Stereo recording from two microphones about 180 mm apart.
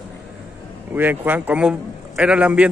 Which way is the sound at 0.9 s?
10° right (ahead or behind).